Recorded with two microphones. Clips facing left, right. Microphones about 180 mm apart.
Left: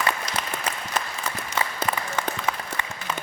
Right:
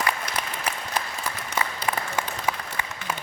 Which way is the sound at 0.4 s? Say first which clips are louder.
Even; 10° right (ahead or behind).